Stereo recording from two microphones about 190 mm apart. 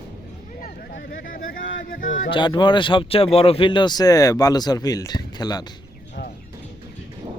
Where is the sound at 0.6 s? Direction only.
45° left (ahead or behind).